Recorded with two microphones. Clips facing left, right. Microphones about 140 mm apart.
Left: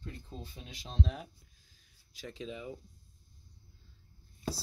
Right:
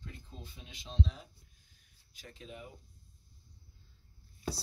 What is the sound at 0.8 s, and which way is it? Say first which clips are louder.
Speech: left 1 dB; 60° left (ahead or behind).